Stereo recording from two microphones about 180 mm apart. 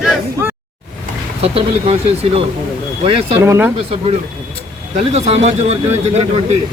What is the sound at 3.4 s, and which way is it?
Speech, 10° right (ahead or behind).